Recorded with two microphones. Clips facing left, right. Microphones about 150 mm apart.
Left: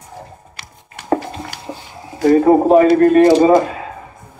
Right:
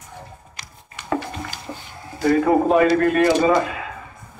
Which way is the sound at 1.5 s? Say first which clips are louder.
Left 3 dB; 70° left (ahead or behind).